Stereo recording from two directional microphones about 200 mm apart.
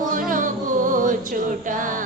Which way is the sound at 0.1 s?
40° right (ahead or behind).